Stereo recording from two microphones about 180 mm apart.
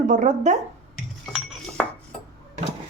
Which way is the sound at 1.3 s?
5° right (ahead or behind).